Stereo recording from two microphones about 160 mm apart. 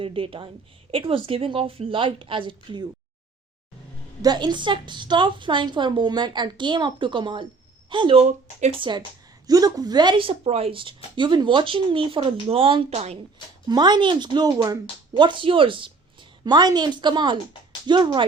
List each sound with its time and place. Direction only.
0.0 s speech: 35° right (ahead or behind)
4.2 s a woman's voice: 25° right (ahead or behind); by 8.7 s 45° right (ahead or behind)
9.5 s speech: 25° right (ahead or behind); by 13.1 s 40° right (ahead or behind)
13.7 s a woman's voice: 25° right (ahead or behind)